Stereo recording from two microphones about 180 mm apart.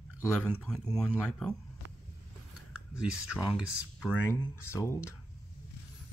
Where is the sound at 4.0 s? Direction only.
15° left (ahead or behind).